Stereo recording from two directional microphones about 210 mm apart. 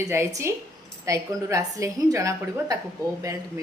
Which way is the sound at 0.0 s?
15° right (ahead or behind).